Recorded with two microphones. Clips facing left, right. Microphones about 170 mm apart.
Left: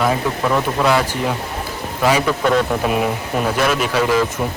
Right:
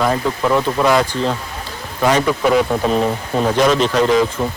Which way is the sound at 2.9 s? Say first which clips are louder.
Right 2 dB; 10° left (ahead or behind).